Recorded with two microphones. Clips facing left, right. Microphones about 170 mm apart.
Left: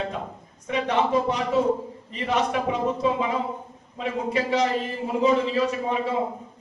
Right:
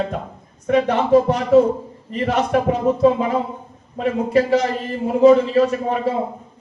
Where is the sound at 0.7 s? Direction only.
50° right (ahead or behind).